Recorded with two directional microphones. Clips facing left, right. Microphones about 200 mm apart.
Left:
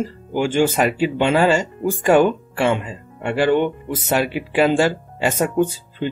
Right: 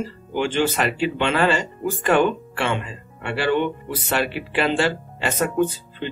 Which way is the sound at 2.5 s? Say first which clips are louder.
Left 5 dB; 40° left (ahead or behind).